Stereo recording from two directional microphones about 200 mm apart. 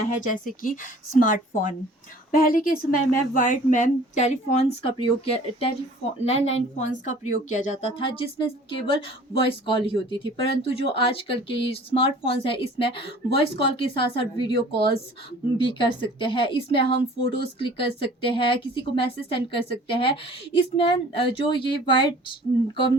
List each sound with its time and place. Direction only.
0.2 s a woman's voice: 40° left (ahead or behind); by 22.4 s 25° left (ahead or behind)